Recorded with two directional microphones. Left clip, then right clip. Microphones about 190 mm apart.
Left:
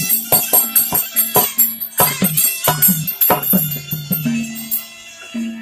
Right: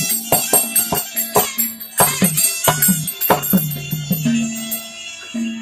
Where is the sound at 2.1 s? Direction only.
5° right (ahead or behind).